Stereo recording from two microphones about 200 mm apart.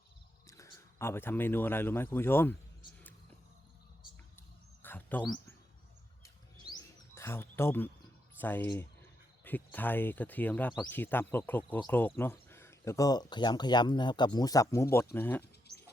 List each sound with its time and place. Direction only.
0.4 s speech: 15° left (ahead or behind)
4.4 s a sound: 10° left (ahead or behind)
6.2 s bird: 15° left (ahead or behind)
8.4 s speech: 10° left (ahead or behind)